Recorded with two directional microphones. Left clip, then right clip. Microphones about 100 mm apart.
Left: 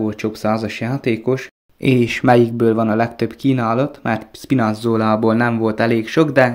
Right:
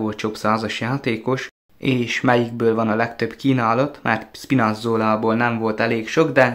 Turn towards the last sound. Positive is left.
turn(degrees=40)  # may be behind; listen again after turning